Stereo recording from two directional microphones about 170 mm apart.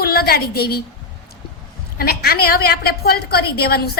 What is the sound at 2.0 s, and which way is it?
A woman's voice, 65° left (ahead or behind).